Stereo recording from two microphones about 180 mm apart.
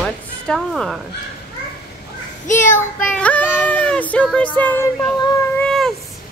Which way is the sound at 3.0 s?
5° left (ahead or behind).